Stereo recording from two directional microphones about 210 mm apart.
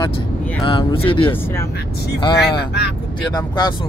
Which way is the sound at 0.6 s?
25° left (ahead or behind).